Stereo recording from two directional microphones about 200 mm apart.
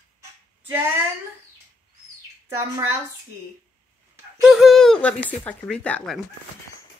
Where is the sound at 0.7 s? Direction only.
10° right (ahead or behind).